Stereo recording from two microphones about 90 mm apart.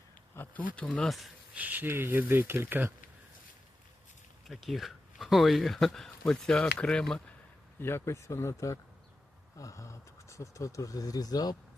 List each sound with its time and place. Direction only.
0.3 s speech: 15° left (ahead or behind)
0.9 s speech: centre (ahead or behind)
1.5 s speech: 20° right (ahead or behind)
4.4 s speech: centre (ahead or behind)
7.8 s speech: 25° left (ahead or behind); by 11.5 s 45° left (ahead or behind)